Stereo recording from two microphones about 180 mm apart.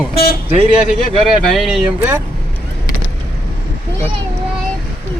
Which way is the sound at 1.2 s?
Centre (ahead or behind).